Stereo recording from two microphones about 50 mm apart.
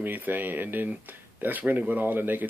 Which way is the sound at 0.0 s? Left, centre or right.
Right.